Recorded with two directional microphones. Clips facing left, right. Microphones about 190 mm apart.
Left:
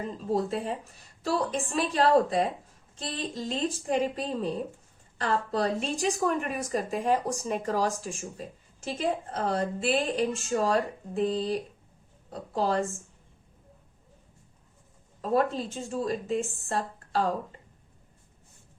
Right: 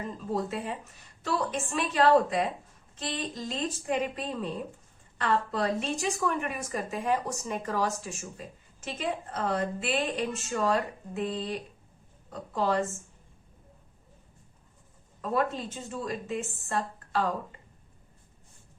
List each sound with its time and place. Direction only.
0.3 s a woman's voice: 35° left (ahead or behind)
15.2 s a woman's voice: 35° left (ahead or behind)